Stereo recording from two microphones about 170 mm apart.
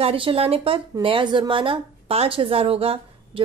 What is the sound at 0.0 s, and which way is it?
A woman's voice, 30° right (ahead or behind).